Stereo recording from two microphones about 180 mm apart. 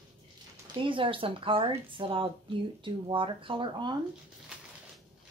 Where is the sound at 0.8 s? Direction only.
30° right (ahead or behind).